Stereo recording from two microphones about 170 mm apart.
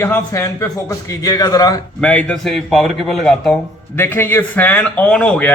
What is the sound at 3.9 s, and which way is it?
A man's voice, 15° left (ahead or behind).